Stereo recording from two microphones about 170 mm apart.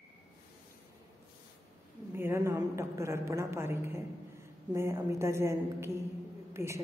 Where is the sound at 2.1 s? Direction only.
15° right (ahead or behind).